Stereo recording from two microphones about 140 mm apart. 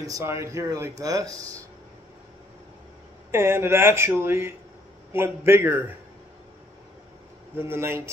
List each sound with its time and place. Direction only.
0.0 s speech: 20° right (ahead or behind)
3.3 s speech: 20° right (ahead or behind)
7.5 s speech: 15° right (ahead or behind)